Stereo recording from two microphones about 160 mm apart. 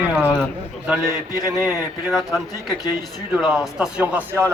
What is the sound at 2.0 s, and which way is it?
A man's voice, centre (ahead or behind).